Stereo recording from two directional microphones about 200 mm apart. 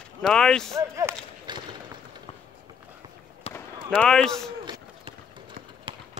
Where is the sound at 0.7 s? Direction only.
15° right (ahead or behind).